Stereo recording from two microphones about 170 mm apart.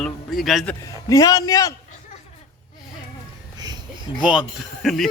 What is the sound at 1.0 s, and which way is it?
Speech, 20° left (ahead or behind).